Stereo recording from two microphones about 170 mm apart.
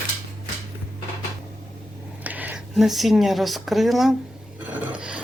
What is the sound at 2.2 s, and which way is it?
Speech, 10° right (ahead or behind).